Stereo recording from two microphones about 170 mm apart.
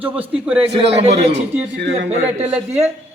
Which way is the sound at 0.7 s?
35° right (ahead or behind).